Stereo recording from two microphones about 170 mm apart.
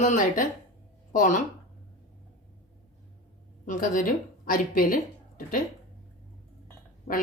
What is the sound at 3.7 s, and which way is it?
A woman's voice, 50° left (ahead or behind).